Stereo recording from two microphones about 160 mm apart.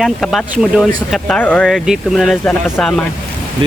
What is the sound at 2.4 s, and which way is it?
Speech, 10° left (ahead or behind).